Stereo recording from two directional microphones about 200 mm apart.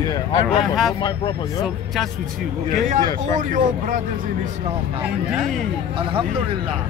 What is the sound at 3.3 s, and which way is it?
Speech, 40° right (ahead or behind).